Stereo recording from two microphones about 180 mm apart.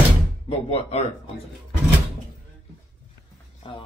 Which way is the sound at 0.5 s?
35° left (ahead or behind).